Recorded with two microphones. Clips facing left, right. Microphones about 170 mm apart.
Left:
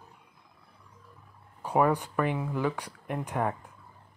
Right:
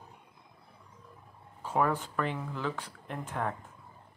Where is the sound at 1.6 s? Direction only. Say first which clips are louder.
Left 4 dB; 15° left (ahead or behind).